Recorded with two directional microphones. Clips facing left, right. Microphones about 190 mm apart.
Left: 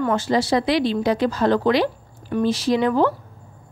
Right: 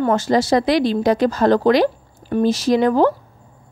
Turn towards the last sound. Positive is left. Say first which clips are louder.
# right 3 dB
turn(degrees=-40)  # may be behind; listen again after turning